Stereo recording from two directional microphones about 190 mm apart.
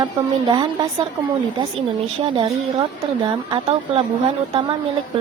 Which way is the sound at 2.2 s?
25° right (ahead or behind).